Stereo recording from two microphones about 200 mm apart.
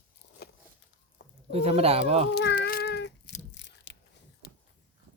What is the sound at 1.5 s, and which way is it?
Speech, 30° right (ahead or behind).